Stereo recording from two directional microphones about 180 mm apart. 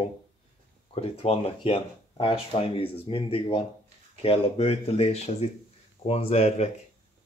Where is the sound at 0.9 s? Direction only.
35° left (ahead or behind).